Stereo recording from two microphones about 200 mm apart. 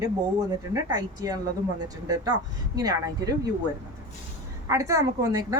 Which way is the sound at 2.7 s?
15° right (ahead or behind).